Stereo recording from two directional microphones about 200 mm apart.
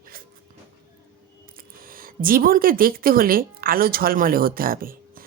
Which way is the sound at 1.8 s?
45° right (ahead or behind).